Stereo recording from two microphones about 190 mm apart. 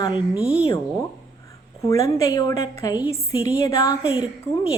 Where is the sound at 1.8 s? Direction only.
15° left (ahead or behind).